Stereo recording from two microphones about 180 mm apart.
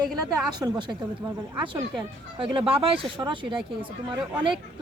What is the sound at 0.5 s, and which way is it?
Speech, 25° right (ahead or behind).